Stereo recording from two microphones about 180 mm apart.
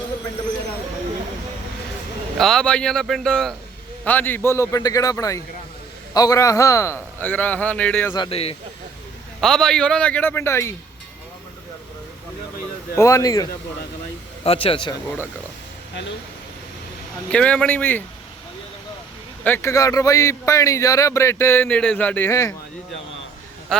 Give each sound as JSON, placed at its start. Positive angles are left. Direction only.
{"t": 2.4, "sound": "a man's voice", "side_deg": 0}
{"t": 8.1, "sound": "speech", "side_deg": 30}
{"t": 9.4, "sound": "a man's voice", "side_deg": 5}
{"t": 13.0, "sound": "speech", "side_deg": 15}
{"t": 14.4, "sound": "speech", "side_deg": 30}
{"t": 17.2, "sound": "a man's voice", "side_deg": 5}
{"t": 19.5, "sound": "a man's voice", "side_deg": 15}